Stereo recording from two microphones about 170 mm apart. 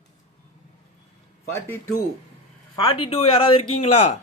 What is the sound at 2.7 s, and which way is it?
Speech, 35° left (ahead or behind).